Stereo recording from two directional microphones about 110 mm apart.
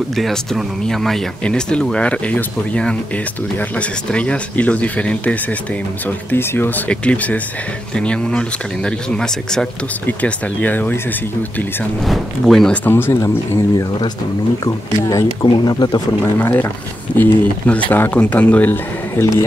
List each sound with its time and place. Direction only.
0.1 s speech: centre (ahead or behind)
12.0 s speech: centre (ahead or behind)
12.8 s speech: 20° left (ahead or behind)
14.6 s speech: 30° left (ahead or behind)
15.4 s speech: 40° left (ahead or behind)
16.1 s speech: 20° left (ahead or behind)